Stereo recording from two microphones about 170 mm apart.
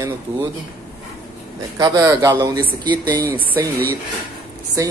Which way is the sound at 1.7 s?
20° right (ahead or behind).